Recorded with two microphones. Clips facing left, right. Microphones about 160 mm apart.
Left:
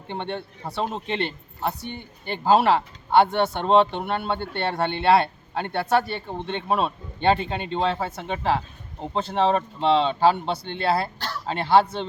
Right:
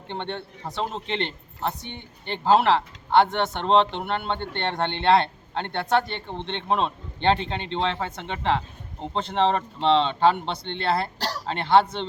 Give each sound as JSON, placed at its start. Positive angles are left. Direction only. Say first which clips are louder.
{"t": 0.1, "sound": "a man's voice", "louder": "left 1 dB", "side_deg": 10}
{"t": 11.2, "sound": "a sound", "louder": "right 2 dB", "side_deg": -35}
{"t": 11.4, "sound": "a man's voice", "louder": "left 1 dB", "side_deg": 5}